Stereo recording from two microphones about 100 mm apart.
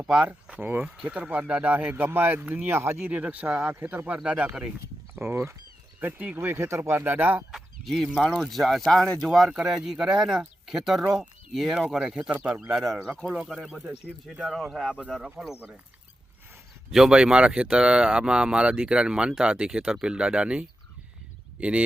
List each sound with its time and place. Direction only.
0.0 s speech: 5° right (ahead or behind); by 3.1 s 25° right (ahead or behind)
3.1 s speech: 15° right (ahead or behind)
5.1 s speech: 25° right (ahead or behind)
7.5 s a sound: centre (ahead or behind)
8.4 s speech: centre (ahead or behind)
16.9 s speech: 5° right (ahead or behind)